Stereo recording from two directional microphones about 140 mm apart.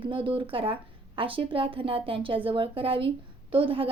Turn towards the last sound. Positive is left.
turn(degrees=-40)  # may be behind; listen again after turning